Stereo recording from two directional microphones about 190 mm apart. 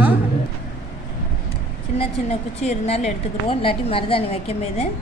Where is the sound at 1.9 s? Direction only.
35° left (ahead or behind).